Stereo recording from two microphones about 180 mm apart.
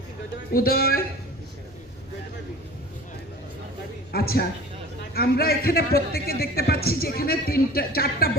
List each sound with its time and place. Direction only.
0.5 s a man's voice: 55° left (ahead or behind)
4.1 s a man's voice: 60° left (ahead or behind)